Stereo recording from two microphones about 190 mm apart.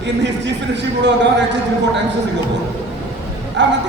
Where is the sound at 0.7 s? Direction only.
65° right (ahead or behind).